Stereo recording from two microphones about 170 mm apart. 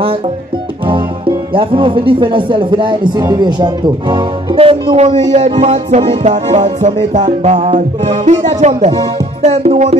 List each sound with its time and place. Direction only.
0.8 s speech: 30° right (ahead or behind)
5.3 s music: 45° right (ahead or behind)
8.3 s speech: 40° right (ahead or behind)